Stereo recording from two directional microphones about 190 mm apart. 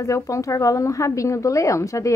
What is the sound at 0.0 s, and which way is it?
A woman's voice, 15° left (ahead or behind).